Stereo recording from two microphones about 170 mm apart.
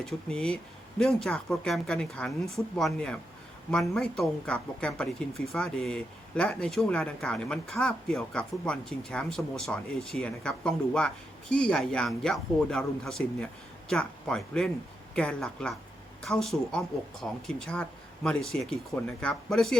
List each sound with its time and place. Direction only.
0.0 s speech: 5° left (ahead or behind)